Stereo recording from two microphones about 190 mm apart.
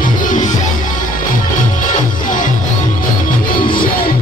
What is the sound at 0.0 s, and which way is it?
Music, 45° left (ahead or behind).